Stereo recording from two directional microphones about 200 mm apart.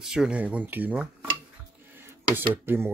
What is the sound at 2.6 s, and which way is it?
Speech, 10° right (ahead or behind).